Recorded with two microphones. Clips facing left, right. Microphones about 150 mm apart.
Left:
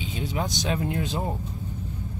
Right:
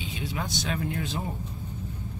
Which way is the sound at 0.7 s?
25° left (ahead or behind).